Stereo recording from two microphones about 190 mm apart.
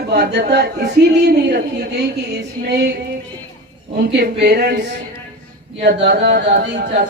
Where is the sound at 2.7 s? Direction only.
60° right (ahead or behind).